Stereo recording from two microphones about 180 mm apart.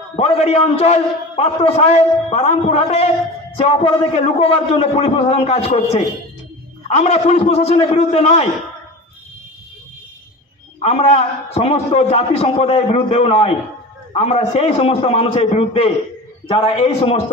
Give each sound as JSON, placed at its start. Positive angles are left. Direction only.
{"t": 0.1, "sound": "a man's voice", "side_deg": 35}
{"t": 10.8, "sound": "a man's voice", "side_deg": 35}